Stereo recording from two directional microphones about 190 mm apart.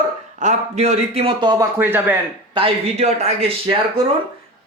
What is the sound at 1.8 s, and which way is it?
Speech, 10° right (ahead or behind).